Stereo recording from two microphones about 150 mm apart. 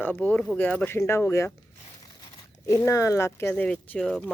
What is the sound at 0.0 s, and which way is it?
Speech, 10° left (ahead or behind).